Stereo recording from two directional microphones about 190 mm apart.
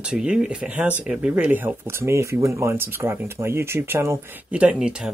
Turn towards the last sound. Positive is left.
turn(degrees=-5)  # may be behind; listen again after turning